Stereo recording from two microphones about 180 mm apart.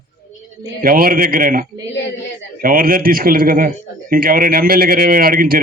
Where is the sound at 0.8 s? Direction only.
50° right (ahead or behind).